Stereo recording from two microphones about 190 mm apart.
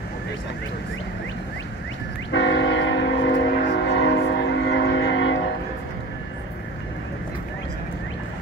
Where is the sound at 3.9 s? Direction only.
65° left (ahead or behind); by 5.4 s 85° left.